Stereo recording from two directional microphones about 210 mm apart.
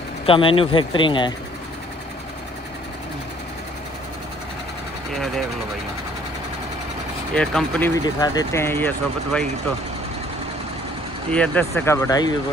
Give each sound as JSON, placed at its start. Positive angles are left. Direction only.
{"t": 0.3, "sound": "speech", "side_deg": 25}
{"t": 7.3, "sound": "speech", "side_deg": 5}
{"t": 8.0, "sound": "speech", "side_deg": 20}
{"t": 11.2, "sound": "speech", "side_deg": 5}